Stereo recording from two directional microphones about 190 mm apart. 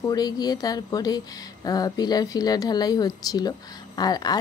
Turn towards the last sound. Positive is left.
turn(degrees=20)  # may be behind; listen again after turning